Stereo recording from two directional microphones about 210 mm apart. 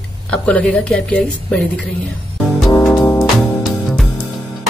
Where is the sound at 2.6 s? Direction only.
15° left (ahead or behind).